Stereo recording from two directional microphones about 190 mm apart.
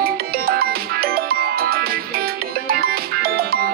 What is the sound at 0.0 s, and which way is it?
Music, 55° right (ahead or behind).